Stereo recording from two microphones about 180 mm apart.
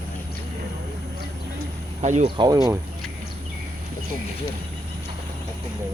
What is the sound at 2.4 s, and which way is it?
Speech, 20° right (ahead or behind).